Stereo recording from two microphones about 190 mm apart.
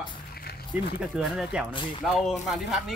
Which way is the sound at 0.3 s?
55° left (ahead or behind).